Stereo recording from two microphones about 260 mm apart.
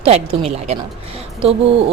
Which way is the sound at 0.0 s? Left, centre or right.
Right.